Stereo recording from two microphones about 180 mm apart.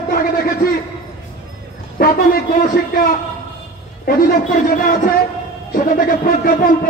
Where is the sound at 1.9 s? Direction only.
55° left (ahead or behind).